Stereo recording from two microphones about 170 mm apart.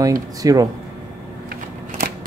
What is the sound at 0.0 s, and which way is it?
Speech, 20° right (ahead or behind).